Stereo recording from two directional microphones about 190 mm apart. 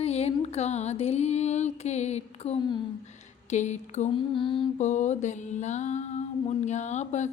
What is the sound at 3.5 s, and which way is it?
Mantra, 40° left (ahead or behind).